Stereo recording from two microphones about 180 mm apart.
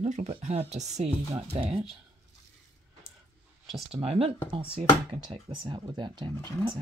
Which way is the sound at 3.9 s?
35° right (ahead or behind).